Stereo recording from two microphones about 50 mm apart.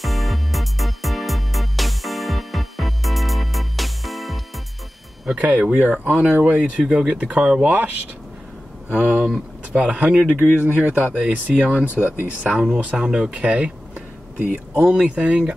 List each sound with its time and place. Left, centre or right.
0.0 s music: centre
5.3 s speech: right
8.9 s speech: right